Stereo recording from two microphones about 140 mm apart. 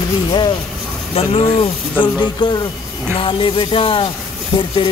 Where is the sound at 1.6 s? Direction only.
35° left (ahead or behind).